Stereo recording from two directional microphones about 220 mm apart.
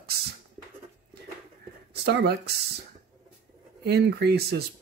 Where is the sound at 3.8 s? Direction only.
45° right (ahead or behind).